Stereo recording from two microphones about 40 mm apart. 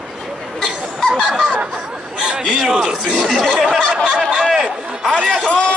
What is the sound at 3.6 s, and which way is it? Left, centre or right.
Speech, centre.